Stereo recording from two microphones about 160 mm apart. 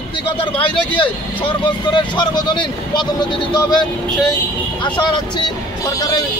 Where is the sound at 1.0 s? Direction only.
30° left (ahead or behind).